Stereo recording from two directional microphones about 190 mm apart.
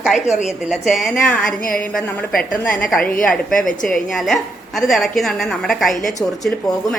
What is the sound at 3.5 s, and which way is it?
Speech, 45° left (ahead or behind).